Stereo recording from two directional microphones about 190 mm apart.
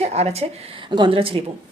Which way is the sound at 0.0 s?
35° right (ahead or behind).